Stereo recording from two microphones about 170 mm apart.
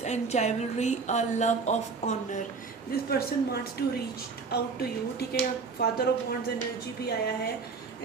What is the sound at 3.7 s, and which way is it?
A woman's voice, 70° left (ahead or behind).